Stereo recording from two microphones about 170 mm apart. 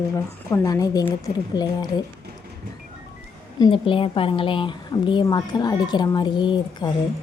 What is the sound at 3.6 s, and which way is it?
A woman's voice, 30° left (ahead or behind).